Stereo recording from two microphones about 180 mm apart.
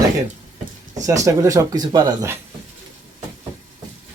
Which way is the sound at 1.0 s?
20° right (ahead or behind).